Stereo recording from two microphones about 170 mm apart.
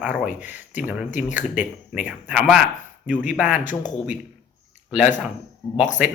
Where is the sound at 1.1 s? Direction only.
45° left (ahead or behind).